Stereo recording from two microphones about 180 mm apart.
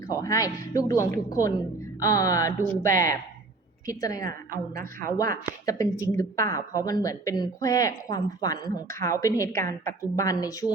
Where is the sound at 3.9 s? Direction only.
20° left (ahead or behind).